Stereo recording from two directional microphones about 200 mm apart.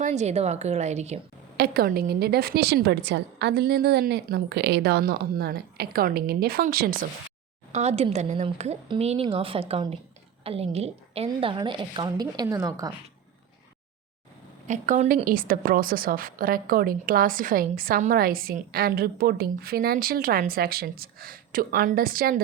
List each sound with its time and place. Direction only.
0.0 s a woman's voice: 35° right (ahead or behind)
1.5 s a woman's voice: 50° right (ahead or behind)
7.8 s a woman's voice: 30° right (ahead or behind)
14.7 s a woman's voice: 40° right (ahead or behind)